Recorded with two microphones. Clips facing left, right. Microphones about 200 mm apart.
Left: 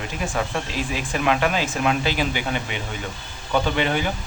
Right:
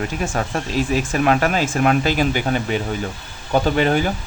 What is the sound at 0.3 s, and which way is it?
Speech, 45° right (ahead or behind).